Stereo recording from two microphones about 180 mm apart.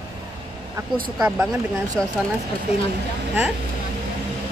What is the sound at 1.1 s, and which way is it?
Speech, 5° right (ahead or behind).